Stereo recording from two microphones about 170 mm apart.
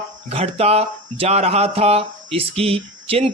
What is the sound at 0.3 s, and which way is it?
Speech, 35° right (ahead or behind).